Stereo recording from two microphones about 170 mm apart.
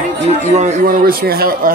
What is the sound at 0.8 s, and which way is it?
Speech, 60° right (ahead or behind).